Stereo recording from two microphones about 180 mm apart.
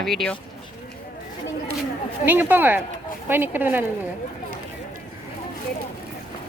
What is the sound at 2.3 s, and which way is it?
Speech, 10° right (ahead or behind).